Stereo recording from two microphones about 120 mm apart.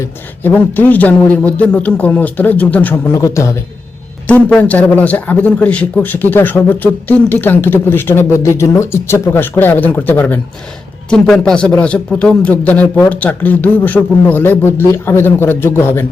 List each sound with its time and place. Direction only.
0.0 s a man's voice: 15° left (ahead or behind)
3.1 s a man's voice: 25° left (ahead or behind)
4.3 s a man's voice: 10° left (ahead or behind)